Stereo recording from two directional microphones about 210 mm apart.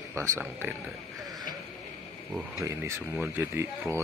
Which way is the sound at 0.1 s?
15° right (ahead or behind).